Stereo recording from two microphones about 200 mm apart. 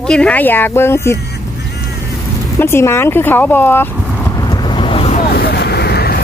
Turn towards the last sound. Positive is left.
turn(degrees=55)  # may be behind; listen again after turning